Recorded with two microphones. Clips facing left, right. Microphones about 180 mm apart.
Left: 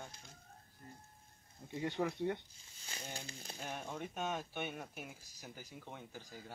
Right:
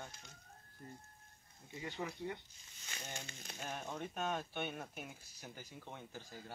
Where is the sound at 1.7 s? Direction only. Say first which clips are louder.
Left 7 dB; 60° left (ahead or behind).